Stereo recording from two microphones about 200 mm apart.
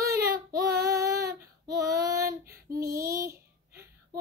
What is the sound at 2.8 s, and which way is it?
Child singing, 45° right (ahead or behind).